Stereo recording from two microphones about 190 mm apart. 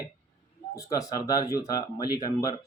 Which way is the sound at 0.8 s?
15° left (ahead or behind).